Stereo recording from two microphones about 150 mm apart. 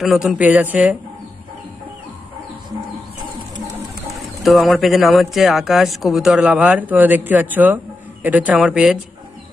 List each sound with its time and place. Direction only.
0.0 s speech: centre (ahead or behind)
4.4 s speech: centre (ahead or behind)